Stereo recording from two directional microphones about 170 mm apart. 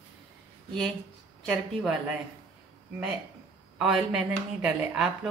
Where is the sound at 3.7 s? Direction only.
5° right (ahead or behind).